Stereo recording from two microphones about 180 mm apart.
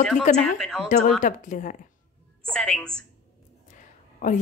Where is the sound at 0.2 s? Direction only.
40° left (ahead or behind).